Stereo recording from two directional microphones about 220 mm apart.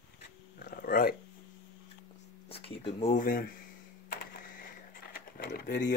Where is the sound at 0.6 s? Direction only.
40° left (ahead or behind).